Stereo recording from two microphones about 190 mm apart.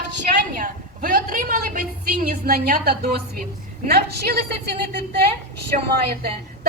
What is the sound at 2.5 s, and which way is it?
A woman's voice, 50° right (ahead or behind).